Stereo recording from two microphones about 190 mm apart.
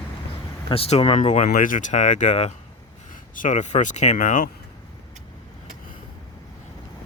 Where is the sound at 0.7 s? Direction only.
30° left (ahead or behind).